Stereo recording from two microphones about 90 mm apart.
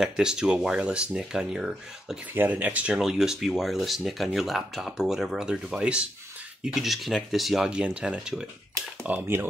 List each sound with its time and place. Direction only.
0.0 s speech: 5° right (ahead or behind)
2.3 s speech: 20° right (ahead or behind)
3.0 s speech: 5° right (ahead or behind)
9.0 s speech: 20° right (ahead or behind)